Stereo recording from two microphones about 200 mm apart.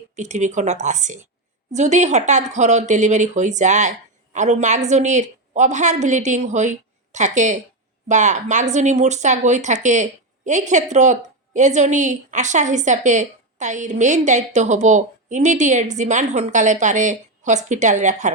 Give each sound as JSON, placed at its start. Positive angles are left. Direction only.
{"t": 0.2, "sound": "a woman's voice", "side_deg": -35}